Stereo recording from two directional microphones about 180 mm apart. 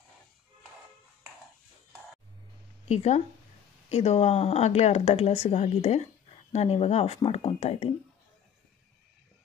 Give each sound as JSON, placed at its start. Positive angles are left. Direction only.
{"t": 2.9, "sound": "speech", "side_deg": 40}